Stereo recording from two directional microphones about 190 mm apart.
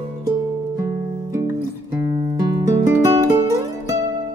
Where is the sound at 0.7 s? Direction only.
15° right (ahead or behind).